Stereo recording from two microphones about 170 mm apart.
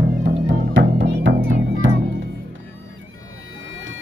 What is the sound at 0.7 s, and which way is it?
Music, 90° right.